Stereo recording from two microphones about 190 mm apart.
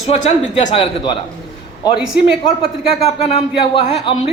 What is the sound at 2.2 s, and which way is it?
A man's voice, 30° left (ahead or behind).